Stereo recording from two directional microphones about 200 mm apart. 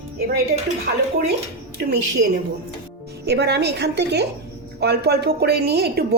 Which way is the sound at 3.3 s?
55° right (ahead or behind).